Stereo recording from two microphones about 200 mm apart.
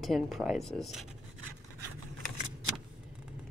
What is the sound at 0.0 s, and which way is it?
Speech, centre (ahead or behind).